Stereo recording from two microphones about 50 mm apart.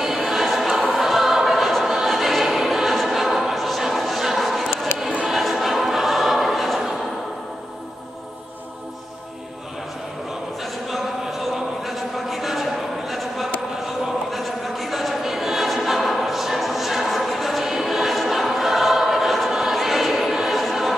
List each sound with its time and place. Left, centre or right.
0.0 s choir: centre
10.6 s a sound: centre
14.3 s choir: centre